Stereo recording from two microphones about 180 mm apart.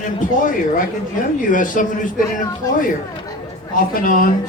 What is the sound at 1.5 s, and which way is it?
Speech, 50° left (ahead or behind).